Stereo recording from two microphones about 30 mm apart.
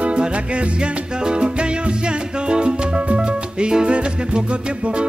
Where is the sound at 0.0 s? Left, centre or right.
Right.